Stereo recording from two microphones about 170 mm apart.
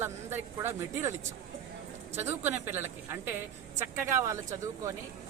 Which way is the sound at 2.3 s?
15° right (ahead or behind).